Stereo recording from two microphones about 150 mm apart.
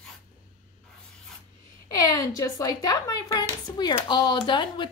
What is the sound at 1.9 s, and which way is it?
Speech, 25° left (ahead or behind).